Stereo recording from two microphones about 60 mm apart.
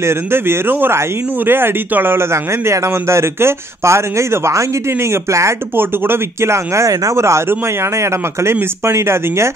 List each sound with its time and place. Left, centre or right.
0.0 s speech: right
2.3 s speech: right
5.8 s speech: right